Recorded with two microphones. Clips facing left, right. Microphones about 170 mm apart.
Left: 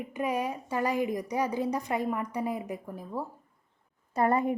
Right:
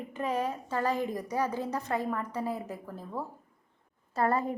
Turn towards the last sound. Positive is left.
turn(degrees=20)  # may be behind; listen again after turning